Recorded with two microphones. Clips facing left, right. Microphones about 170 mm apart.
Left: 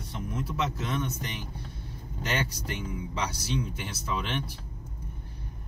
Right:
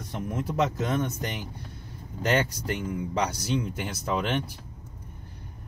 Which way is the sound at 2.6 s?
45° right (ahead or behind).